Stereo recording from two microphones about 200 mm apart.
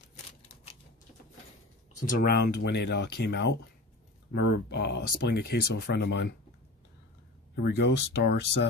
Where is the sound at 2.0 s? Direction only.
45° left (ahead or behind).